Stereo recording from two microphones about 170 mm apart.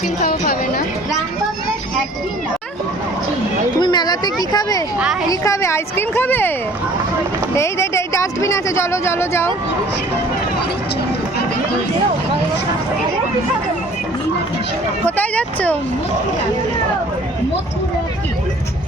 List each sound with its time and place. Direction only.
0.2 s a sound: 60° left (ahead or behind)
3.8 s speech: 25° left (ahead or behind)
7.5 s speech: 15° left (ahead or behind)
15.0 s speech: 10° left (ahead or behind)